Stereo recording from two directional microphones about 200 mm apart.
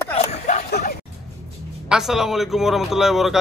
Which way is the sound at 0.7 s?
55° left (ahead or behind).